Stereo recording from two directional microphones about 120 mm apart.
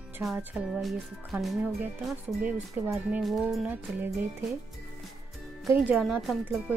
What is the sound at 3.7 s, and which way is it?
Speech, 15° right (ahead or behind).